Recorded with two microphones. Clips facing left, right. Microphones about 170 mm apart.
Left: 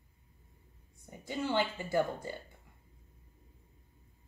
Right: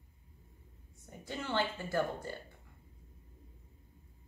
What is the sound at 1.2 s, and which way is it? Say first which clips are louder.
A woman's voice: left 3 dB; 15° left (ahead or behind).